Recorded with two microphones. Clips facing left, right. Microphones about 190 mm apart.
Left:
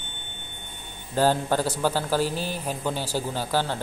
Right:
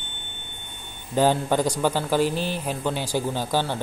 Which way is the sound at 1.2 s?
15° right (ahead or behind).